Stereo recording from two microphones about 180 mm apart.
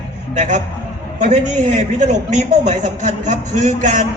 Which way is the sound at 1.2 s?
40° right (ahead or behind).